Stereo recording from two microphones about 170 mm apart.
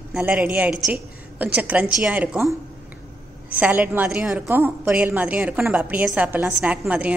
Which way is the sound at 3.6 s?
10° right (ahead or behind).